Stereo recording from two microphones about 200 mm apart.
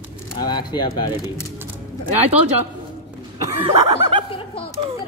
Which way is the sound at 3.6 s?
25° right (ahead or behind).